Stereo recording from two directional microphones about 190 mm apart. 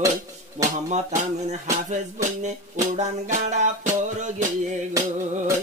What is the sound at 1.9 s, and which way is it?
Music, 40° right (ahead or behind).